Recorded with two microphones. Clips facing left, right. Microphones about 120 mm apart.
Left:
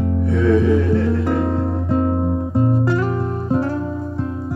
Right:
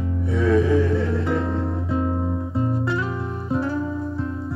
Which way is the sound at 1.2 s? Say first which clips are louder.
Left 4 dB; 55° left (ahead or behind).